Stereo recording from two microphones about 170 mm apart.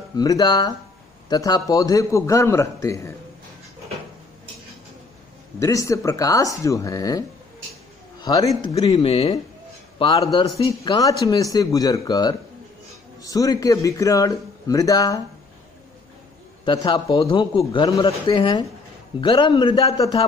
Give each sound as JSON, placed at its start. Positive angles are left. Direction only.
{"t": 0.1, "sound": "speech", "side_deg": 25}
{"t": 5.6, "sound": "a man's voice", "side_deg": 20}
{"t": 8.7, "sound": "speech", "side_deg": 35}
{"t": 9.9, "sound": "speech", "side_deg": 25}
{"t": 16.6, "sound": "speech", "side_deg": 25}